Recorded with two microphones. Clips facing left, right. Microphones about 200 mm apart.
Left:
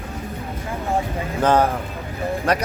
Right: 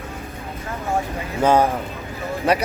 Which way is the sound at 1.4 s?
10° right (ahead or behind).